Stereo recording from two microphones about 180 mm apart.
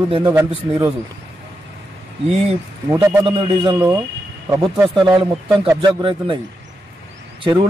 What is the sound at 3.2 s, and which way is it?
Speech, 30° right (ahead or behind).